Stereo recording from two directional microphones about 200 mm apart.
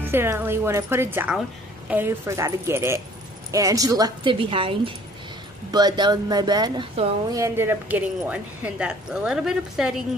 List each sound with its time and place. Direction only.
0.0 s a woman's voice: 10° right (ahead or behind)